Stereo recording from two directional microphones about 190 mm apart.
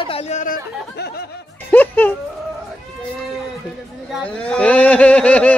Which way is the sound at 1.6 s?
10° left (ahead or behind).